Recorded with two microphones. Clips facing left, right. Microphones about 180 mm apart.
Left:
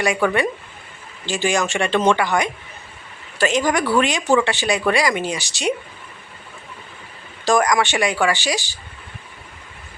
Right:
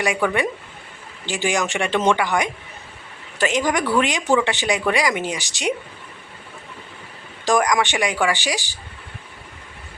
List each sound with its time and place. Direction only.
0.0 s speech: 15° right (ahead or behind)
7.4 s speech: 15° right (ahead or behind)